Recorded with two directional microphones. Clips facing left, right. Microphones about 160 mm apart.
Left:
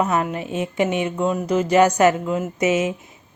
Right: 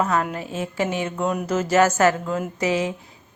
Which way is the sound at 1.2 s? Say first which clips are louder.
Left 2 dB; centre (ahead or behind).